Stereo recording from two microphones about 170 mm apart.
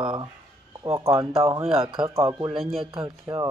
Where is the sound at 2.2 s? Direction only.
15° right (ahead or behind).